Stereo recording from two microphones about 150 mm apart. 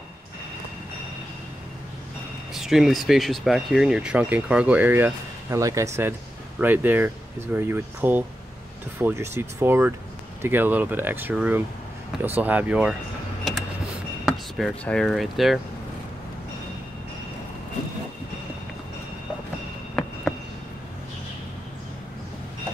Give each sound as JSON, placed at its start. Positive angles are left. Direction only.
{"t": 2.5, "sound": "speech", "side_deg": 0}
{"t": 13.4, "sound": "vehicle", "side_deg": 0}
{"t": 14.2, "sound": "speech", "side_deg": 0}
{"t": 20.0, "sound": "a sound", "side_deg": 0}